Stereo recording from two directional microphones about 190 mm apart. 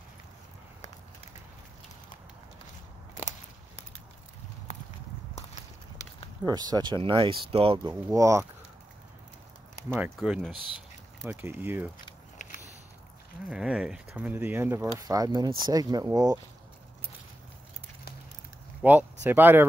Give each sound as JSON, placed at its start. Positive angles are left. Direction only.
{"t": 5.3, "sound": "a sound", "side_deg": 35}
{"t": 6.4, "sound": "speech", "side_deg": -20}
{"t": 7.9, "sound": "speech", "side_deg": -15}
{"t": 10.1, "sound": "speech", "side_deg": 0}
{"t": 12.4, "sound": "a sound", "side_deg": 45}
{"t": 13.5, "sound": "speech", "side_deg": -5}
{"t": 18.8, "sound": "speech", "side_deg": -10}